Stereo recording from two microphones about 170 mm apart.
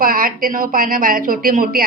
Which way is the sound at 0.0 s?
55° right (ahead or behind).